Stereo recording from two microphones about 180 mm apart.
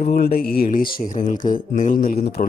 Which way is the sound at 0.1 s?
55° left (ahead or behind).